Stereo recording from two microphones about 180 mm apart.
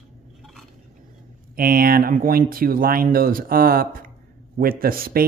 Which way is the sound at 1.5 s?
55° right (ahead or behind).